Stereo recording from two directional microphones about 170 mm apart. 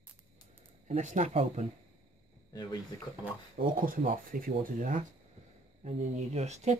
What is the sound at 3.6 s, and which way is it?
Speech, 65° right (ahead or behind).